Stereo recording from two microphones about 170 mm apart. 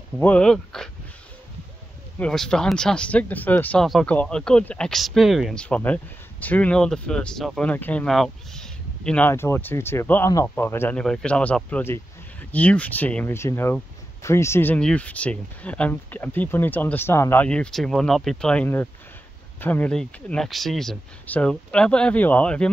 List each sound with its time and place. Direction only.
0.2 s speech: 5° left (ahead or behind)
2.1 s speech: 5° left (ahead or behind)